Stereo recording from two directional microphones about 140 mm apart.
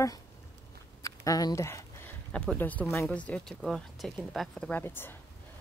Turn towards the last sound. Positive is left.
turn(degrees=15)  # may be behind; listen again after turning